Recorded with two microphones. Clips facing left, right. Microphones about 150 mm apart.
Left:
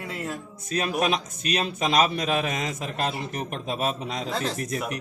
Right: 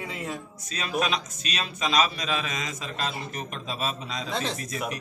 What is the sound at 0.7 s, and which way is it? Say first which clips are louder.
A man's voice: left 3 dB; 55° left (ahead or behind).